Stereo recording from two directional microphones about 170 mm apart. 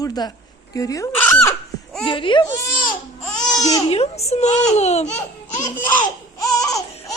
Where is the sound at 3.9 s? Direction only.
35° left (ahead or behind).